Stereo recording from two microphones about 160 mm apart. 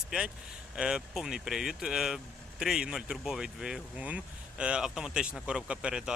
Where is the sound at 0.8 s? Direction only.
5° right (ahead or behind).